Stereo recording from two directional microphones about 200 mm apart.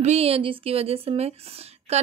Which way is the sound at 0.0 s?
30° right (ahead or behind).